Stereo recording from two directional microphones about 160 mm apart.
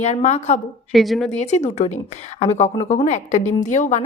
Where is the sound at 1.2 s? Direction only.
45° left (ahead or behind).